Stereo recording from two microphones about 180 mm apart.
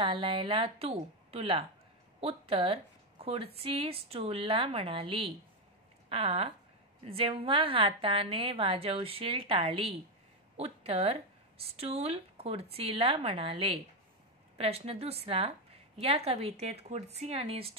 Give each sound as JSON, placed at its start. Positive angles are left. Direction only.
{"t": 0.0, "sound": "a woman's voice", "side_deg": -30}